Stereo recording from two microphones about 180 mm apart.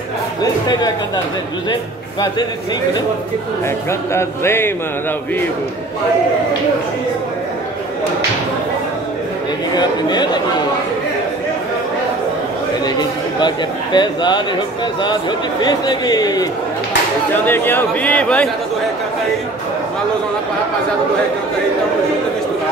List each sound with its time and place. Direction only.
0.4 s speech: 20° left (ahead or behind)
4.1 s speech: 15° left (ahead or behind)
9.8 s a man's voice: 25° left (ahead or behind)
13.9 s a man's voice: 25° left (ahead or behind)
15.6 s a man's voice: 20° left (ahead or behind)
17.5 s speech: 10° left (ahead or behind)